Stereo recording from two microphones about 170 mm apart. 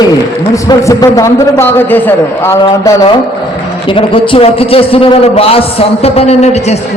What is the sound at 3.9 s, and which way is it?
A man's voice, 30° left (ahead or behind).